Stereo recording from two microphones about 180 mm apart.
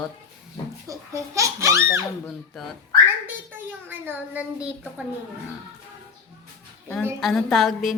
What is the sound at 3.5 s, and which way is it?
Speech, 10° right (ahead or behind).